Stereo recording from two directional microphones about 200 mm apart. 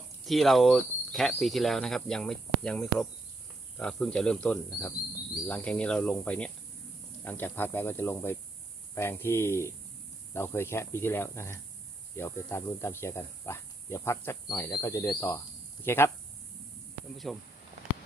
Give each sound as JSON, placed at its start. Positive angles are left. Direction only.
{"t": 0.3, "sound": "cricket", "side_deg": 0}
{"t": 7.3, "sound": "speech", "side_deg": 10}
{"t": 17.2, "sound": "cricket", "side_deg": 0}